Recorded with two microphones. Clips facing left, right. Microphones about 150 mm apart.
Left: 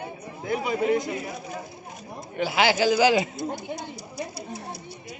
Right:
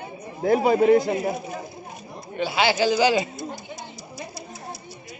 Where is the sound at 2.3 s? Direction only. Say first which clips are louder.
Even; 10° left (ahead or behind).